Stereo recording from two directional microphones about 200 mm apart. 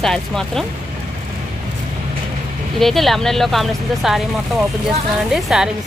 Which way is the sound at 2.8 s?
Centre (ahead or behind).